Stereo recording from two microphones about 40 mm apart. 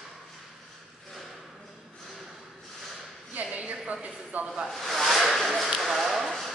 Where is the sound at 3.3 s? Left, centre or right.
Right.